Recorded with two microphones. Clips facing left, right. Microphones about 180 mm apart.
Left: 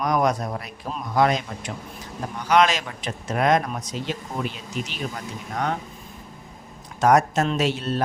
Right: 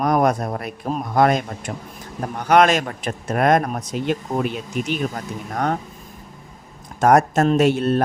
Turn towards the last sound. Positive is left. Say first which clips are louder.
# right 7 dB
turn(degrees=-55)  # may be behind; listen again after turning